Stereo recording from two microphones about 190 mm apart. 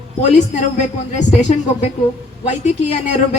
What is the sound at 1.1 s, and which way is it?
Speech, 35° left (ahead or behind).